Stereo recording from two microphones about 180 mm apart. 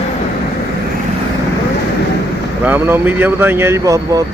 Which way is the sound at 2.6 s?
10° right (ahead or behind).